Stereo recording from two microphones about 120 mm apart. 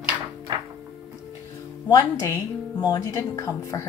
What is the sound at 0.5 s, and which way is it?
Music, 35° right (ahead or behind).